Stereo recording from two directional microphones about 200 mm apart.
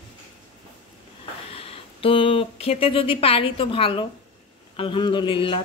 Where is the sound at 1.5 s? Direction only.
30° left (ahead or behind).